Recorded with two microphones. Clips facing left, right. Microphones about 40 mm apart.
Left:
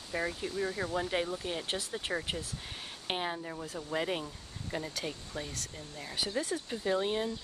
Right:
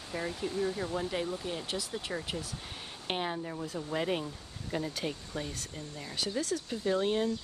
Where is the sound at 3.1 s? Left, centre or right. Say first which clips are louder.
Right 1 dB; centre.